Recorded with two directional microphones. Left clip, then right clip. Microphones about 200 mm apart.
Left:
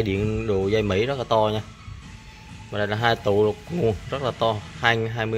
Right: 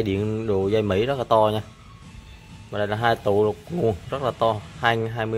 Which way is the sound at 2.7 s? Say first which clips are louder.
Even; 5° right (ahead or behind).